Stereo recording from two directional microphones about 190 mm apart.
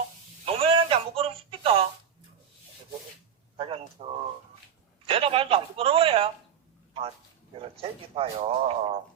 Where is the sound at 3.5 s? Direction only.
30° right (ahead or behind).